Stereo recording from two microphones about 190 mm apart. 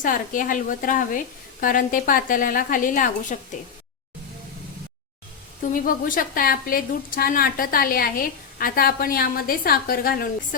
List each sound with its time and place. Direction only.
0.0 s a woman's voice: 45° left (ahead or behind)
5.7 s a woman's voice: 45° left (ahead or behind)